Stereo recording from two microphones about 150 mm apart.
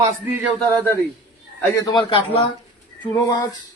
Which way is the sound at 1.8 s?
30° left (ahead or behind).